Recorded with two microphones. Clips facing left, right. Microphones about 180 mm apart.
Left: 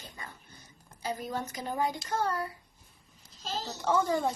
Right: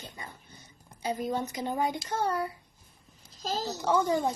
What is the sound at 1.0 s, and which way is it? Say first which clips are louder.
A child's voice: right 4 dB; 25° right (ahead or behind).